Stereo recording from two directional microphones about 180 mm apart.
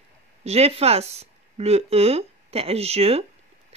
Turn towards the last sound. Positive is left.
turn(degrees=-35)  # may be behind; listen again after turning